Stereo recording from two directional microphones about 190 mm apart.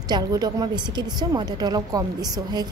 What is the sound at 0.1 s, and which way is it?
Speech, 20° right (ahead or behind).